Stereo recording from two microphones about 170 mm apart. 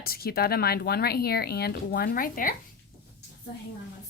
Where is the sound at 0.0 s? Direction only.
65° left (ahead or behind).